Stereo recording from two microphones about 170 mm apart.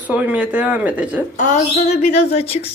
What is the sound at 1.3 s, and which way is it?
Speech, 45° left (ahead or behind).